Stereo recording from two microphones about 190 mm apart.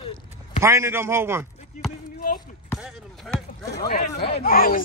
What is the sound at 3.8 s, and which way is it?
Speech, 60° left (ahead or behind).